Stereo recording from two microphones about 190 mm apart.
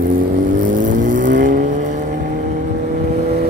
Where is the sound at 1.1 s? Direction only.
45° right (ahead or behind).